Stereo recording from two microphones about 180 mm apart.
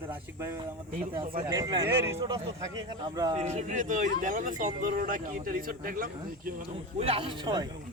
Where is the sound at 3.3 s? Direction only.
40° right (ahead or behind).